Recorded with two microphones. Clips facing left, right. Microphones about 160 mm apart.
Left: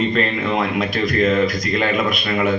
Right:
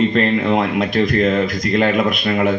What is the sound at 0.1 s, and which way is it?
Speech, 45° right (ahead or behind).